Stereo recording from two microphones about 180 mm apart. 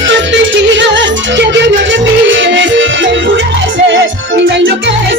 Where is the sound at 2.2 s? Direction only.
90° right.